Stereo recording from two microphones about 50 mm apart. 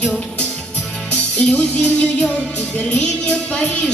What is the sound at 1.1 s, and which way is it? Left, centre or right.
Music, left.